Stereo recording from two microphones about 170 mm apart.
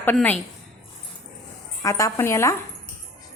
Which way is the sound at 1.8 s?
20° left (ahead or behind).